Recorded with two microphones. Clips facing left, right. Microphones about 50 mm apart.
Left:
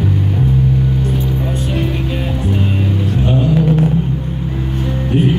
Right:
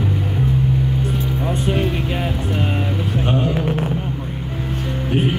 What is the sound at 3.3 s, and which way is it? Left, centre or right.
Vehicle, right.